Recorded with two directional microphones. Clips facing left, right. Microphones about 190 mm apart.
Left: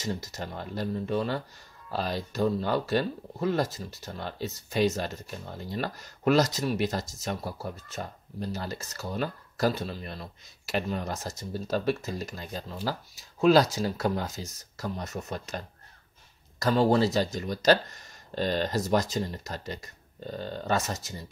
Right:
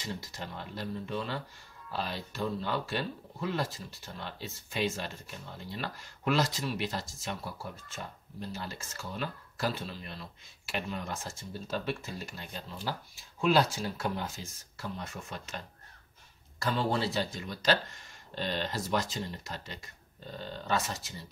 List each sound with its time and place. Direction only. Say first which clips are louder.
0.0 s speech: left 6 dB; 40° left (ahead or behind)